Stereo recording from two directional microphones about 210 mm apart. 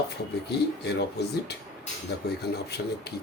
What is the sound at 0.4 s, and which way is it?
Speech, 55° left (ahead or behind).